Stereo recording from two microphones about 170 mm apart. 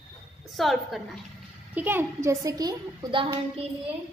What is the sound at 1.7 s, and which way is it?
A woman's voice, 10° right (ahead or behind).